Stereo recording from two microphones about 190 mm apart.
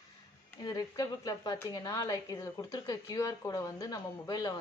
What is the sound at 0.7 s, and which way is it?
A woman's voice, 20° left (ahead or behind).